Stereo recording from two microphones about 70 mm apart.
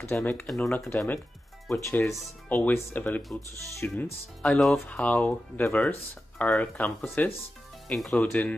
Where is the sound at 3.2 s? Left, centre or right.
Centre.